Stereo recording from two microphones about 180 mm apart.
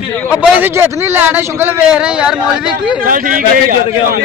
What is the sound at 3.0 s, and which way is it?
A man's voice, 50° right (ahead or behind).